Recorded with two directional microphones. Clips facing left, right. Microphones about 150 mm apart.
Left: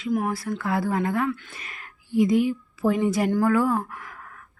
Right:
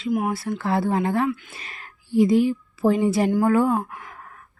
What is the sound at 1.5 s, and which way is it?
Speech, 30° right (ahead or behind).